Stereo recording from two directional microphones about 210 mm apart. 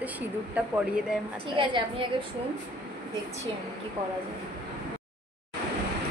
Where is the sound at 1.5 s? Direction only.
25° right (ahead or behind).